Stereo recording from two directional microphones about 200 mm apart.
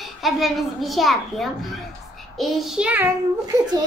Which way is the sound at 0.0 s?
Centre (ahead or behind).